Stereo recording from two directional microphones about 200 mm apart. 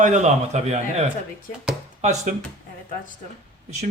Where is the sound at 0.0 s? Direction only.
35° right (ahead or behind).